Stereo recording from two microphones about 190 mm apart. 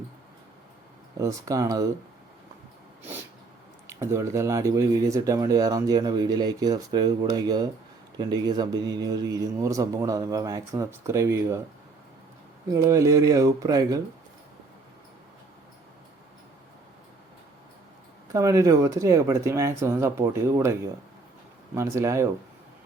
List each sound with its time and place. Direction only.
1.2 s speech: 15° right (ahead or behind)
3.8 s speech: 15° right (ahead or behind)
12.7 s speech: 15° right (ahead or behind)
18.3 s speech: 15° right (ahead or behind)